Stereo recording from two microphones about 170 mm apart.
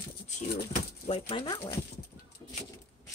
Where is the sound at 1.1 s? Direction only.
35° left (ahead or behind).